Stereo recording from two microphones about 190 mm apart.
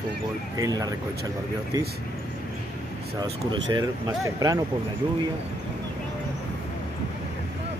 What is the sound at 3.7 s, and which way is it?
Speech, 20° right (ahead or behind).